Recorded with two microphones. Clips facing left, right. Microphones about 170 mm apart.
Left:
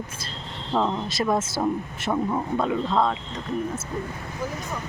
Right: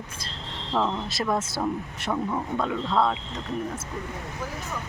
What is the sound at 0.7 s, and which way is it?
Speech, 10° left (ahead or behind).